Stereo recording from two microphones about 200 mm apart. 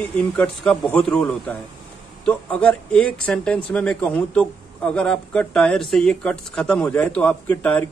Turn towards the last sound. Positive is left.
turn(degrees=5)  # may be behind; listen again after turning